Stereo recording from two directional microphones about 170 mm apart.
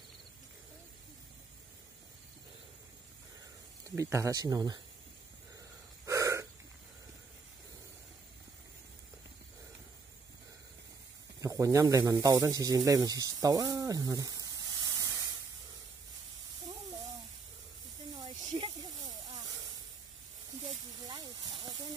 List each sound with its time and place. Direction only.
3.8 s speech: 15° right (ahead or behind)
6.0 s hiccup: 20° right (ahead or behind)
11.4 s speech: 20° right (ahead or behind)
19.0 s snake: 20° right (ahead or behind)
21.0 s snake: 20° right (ahead or behind)